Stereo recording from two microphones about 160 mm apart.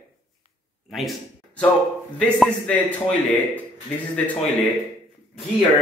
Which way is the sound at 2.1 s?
5° left (ahead or behind).